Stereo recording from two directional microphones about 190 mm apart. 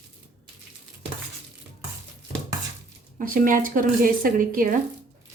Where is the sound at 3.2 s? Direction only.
45° right (ahead or behind).